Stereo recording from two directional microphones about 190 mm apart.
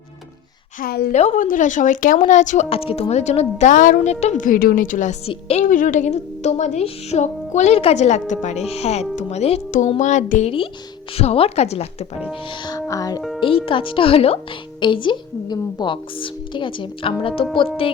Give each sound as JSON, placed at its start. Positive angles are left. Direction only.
{"t": 0.8, "sound": "a woman's voice", "side_deg": 50}
{"t": 1.1, "sound": "speech", "side_deg": 35}
{"t": 12.3, "sound": "a woman's voice", "side_deg": 20}